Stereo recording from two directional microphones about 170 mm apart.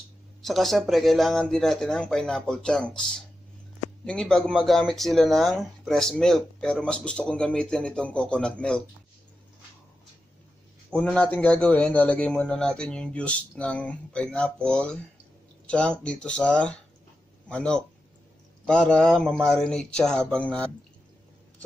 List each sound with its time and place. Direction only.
0.4 s speech: centre (ahead or behind)
10.9 s a man's voice: 5° left (ahead or behind)